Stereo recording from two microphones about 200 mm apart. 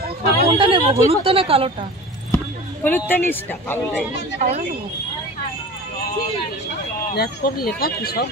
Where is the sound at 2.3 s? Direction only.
10° left (ahead or behind).